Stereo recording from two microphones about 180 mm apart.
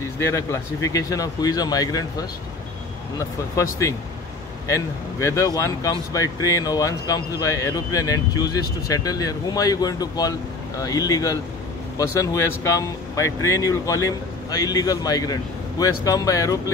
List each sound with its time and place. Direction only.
0.2 s speech: 15° left (ahead or behind)
4.6 s speech: 15° left (ahead or behind)